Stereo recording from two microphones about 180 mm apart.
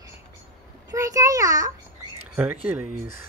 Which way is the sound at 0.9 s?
20° right (ahead or behind).